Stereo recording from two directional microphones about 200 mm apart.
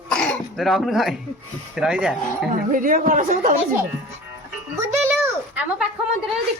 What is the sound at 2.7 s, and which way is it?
Speech, 40° right (ahead or behind).